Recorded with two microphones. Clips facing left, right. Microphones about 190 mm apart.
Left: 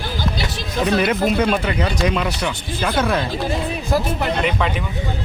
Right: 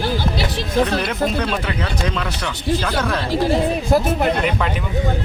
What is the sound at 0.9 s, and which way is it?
Speech, 10° left (ahead or behind).